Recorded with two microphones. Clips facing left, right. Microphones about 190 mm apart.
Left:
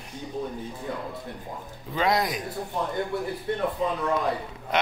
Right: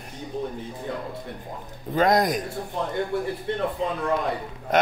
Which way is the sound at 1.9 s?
45° right (ahead or behind).